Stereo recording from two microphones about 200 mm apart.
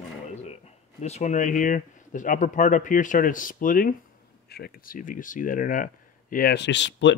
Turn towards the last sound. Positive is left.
turn(degrees=65)  # may be behind; listen again after turning